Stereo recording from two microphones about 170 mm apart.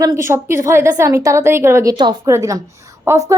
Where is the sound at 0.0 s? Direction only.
15° right (ahead or behind).